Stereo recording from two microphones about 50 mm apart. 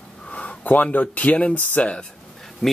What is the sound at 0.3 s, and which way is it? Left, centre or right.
Speech, left.